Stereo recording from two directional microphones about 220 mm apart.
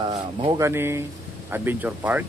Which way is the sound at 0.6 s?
10° right (ahead or behind).